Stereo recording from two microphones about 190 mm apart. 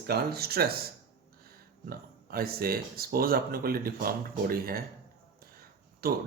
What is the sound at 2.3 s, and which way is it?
Speech, 50° right (ahead or behind).